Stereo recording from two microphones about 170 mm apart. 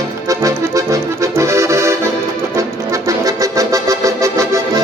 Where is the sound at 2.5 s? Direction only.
20° right (ahead or behind).